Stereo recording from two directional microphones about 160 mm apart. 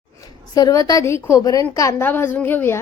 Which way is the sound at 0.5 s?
25° left (ahead or behind).